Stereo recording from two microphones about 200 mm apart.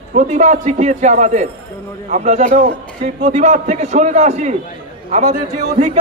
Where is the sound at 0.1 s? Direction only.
35° right (ahead or behind).